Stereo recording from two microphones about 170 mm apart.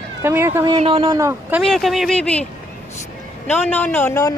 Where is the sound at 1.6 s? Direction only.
Centre (ahead or behind).